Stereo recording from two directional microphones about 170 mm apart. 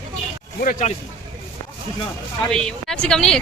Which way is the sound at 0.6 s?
50° left (ahead or behind).